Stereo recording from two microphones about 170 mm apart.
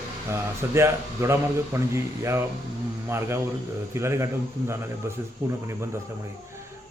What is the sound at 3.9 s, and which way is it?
Speech, 15° right (ahead or behind).